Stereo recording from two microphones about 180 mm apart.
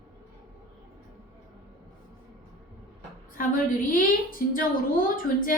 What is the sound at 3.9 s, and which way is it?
A woman's voice, 50° left (ahead or behind).